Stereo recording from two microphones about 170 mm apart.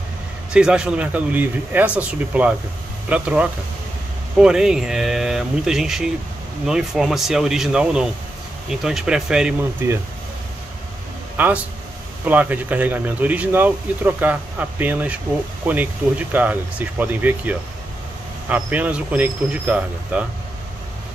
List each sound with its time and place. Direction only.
0.5 s speech: 5° right (ahead or behind)
9.8 s speech: 15° right (ahead or behind)
11.3 s a man's voice: 10° right (ahead or behind)